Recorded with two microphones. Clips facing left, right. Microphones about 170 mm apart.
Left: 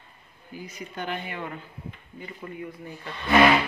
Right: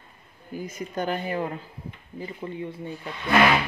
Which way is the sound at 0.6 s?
45° right (ahead or behind).